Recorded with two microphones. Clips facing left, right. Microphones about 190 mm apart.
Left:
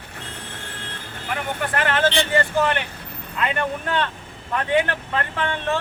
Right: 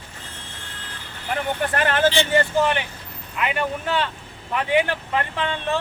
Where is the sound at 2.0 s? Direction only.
10° right (ahead or behind).